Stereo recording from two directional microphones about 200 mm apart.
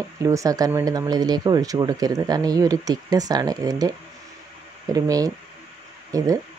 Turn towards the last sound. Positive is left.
turn(degrees=-15)  # may be behind; listen again after turning